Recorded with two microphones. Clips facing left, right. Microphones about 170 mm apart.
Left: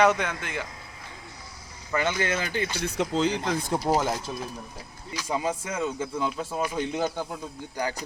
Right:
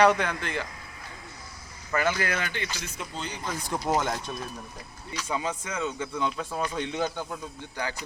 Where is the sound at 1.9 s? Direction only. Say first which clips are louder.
Left 1 dB; 20° left (ahead or behind).